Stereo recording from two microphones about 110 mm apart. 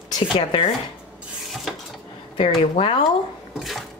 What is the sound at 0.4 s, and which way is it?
Speech, 60° left (ahead or behind).